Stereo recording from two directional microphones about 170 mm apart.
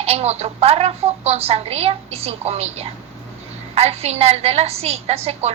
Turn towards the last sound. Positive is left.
turn(degrees=-40)  # may be behind; listen again after turning